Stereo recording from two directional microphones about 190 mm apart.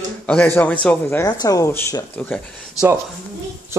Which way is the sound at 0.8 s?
10° left (ahead or behind).